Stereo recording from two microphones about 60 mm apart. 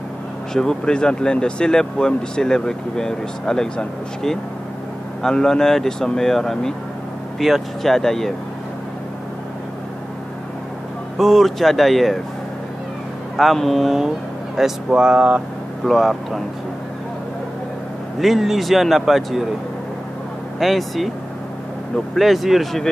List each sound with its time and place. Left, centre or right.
0.5 s a man's voice: centre
11.1 s a man's voice: centre
13.4 s a man's voice: centre
14.9 s speech: centre
15.8 s a man's voice: centre
18.2 s a man's voice: centre
20.5 s a man's voice: centre